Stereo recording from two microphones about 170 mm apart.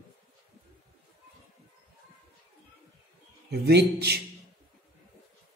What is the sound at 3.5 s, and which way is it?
Speech, 75° right (ahead or behind).